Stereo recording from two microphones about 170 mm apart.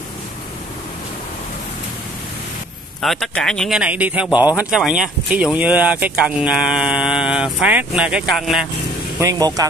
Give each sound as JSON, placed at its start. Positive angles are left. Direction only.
{"t": 3.0, "sound": "speech", "side_deg": 0}
{"t": 4.3, "sound": "speech", "side_deg": 25}
{"t": 4.6, "sound": "speech", "side_deg": -5}
{"t": 9.2, "sound": "speech", "side_deg": -20}